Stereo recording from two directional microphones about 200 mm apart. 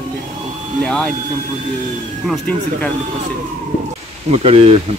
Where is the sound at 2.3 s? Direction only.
5° left (ahead or behind).